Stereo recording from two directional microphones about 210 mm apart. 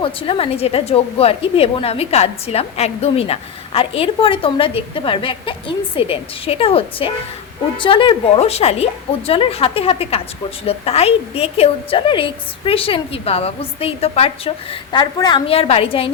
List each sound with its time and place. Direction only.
0.0 s a woman's voice: 25° left (ahead or behind)